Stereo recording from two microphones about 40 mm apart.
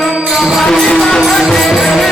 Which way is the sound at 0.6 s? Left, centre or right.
Centre.